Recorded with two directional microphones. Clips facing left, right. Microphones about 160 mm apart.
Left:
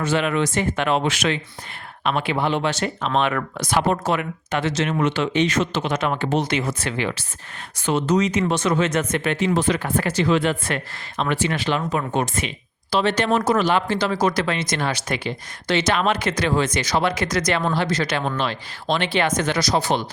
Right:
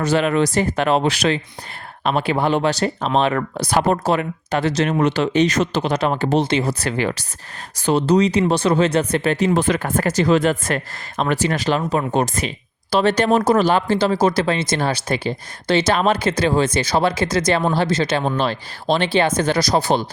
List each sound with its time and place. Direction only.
0.0 s speech: 40° right (ahead or behind)
9.6 s speech: 50° right (ahead or behind); by 20.1 s 35° right (ahead or behind)